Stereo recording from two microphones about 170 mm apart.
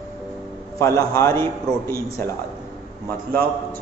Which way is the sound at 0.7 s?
20° left (ahead or behind).